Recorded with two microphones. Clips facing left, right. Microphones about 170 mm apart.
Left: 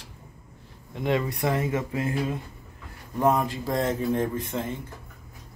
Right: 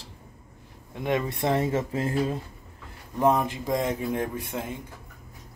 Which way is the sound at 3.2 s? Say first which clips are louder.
Even; 20° right (ahead or behind).